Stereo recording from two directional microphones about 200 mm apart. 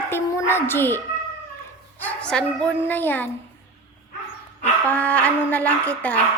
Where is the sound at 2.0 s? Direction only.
5° left (ahead or behind).